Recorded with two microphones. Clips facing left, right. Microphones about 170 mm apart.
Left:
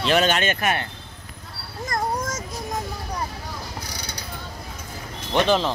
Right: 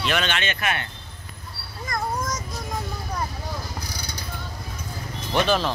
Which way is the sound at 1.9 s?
50° left (ahead or behind).